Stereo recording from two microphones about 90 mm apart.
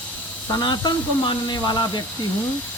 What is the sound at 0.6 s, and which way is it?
Speech, 55° left (ahead or behind).